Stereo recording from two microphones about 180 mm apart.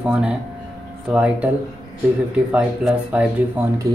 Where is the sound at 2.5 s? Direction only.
5° right (ahead or behind).